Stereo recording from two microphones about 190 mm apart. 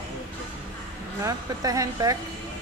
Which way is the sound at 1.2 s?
20° right (ahead or behind).